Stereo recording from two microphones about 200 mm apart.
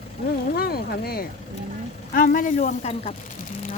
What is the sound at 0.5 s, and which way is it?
Speech, 50° left (ahead or behind).